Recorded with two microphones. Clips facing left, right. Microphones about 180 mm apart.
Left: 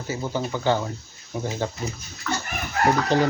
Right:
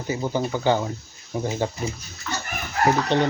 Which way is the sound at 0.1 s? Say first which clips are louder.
Right 3 dB; 15° right (ahead or behind).